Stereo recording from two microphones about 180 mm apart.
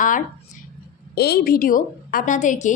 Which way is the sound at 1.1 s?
60° left (ahead or behind).